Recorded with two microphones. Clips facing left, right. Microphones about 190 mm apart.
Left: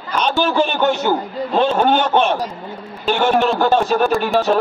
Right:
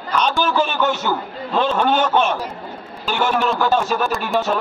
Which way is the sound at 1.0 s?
35° left (ahead or behind).